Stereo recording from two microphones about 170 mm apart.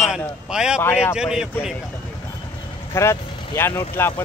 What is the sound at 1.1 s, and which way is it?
Speech, 5° right (ahead or behind).